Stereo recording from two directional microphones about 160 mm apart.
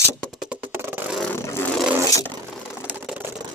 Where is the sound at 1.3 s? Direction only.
15° left (ahead or behind).